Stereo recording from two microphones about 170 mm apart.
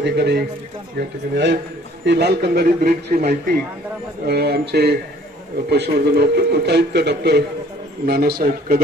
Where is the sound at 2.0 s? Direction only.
80° right; by 3.5 s 55° right (ahead or behind).